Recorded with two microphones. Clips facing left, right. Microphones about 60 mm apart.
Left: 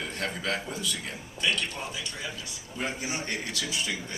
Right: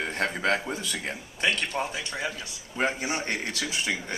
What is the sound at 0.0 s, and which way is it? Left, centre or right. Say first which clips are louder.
A man's voice: right 5 dB; right.